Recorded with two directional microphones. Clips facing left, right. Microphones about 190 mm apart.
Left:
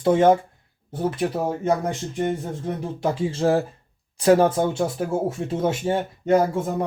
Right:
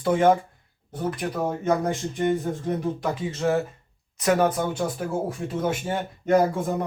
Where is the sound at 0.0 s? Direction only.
25° left (ahead or behind).